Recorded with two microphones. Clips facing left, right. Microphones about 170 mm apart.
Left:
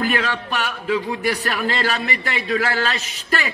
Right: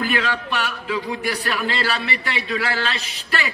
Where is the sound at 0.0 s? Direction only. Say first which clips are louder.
Left 1 dB; 40° left (ahead or behind).